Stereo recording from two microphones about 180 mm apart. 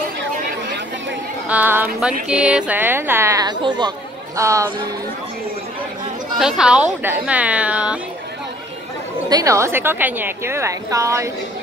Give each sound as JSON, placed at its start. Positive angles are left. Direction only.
{"t": 1.5, "sound": "a woman's voice", "side_deg": -10}
{"t": 6.4, "sound": "a woman's voice", "side_deg": -5}
{"t": 9.3, "sound": "a woman's voice", "side_deg": -20}